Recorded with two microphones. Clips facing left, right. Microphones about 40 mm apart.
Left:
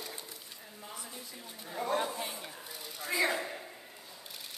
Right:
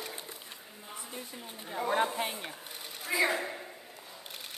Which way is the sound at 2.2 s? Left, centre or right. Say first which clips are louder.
Right 5 dB; right.